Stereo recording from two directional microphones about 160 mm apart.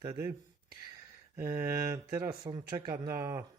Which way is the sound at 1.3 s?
15° right (ahead or behind).